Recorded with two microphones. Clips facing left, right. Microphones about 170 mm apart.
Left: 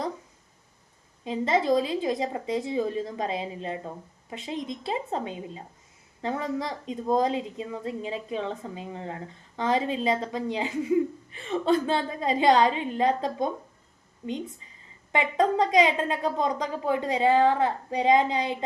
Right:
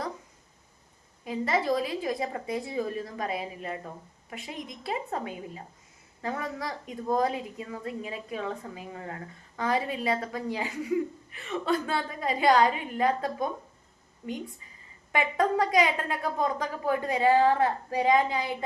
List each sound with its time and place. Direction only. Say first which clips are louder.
1.2 s a woman's voice: left 3 dB; 25° left (ahead or behind)
15.1 s a woman's voice: left 2 dB; 20° left (ahead or behind)